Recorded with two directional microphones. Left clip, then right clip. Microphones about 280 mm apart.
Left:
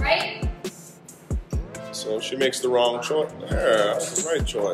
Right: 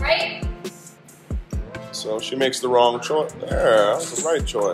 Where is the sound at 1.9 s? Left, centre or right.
Centre.